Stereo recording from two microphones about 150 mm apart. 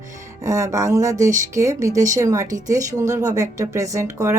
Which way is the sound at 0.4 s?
20° right (ahead or behind).